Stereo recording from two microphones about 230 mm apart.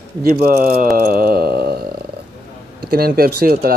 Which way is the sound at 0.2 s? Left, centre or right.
Right.